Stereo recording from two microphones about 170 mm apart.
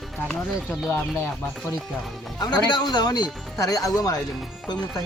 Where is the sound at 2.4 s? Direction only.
25° left (ahead or behind).